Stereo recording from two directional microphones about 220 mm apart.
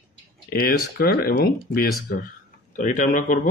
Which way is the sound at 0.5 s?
45° left (ahead or behind).